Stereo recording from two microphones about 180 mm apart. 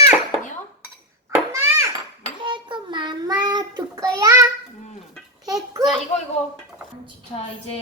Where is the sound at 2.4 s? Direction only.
25° right (ahead or behind).